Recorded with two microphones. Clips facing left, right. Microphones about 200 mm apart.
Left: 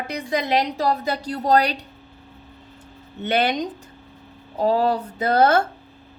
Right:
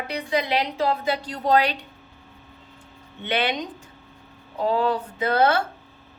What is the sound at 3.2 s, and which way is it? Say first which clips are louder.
A woman's voice: left 4 dB; 40° left (ahead or behind).